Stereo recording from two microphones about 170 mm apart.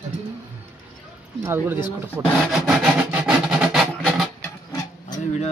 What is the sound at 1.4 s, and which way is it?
Rub, 15° right (ahead or behind).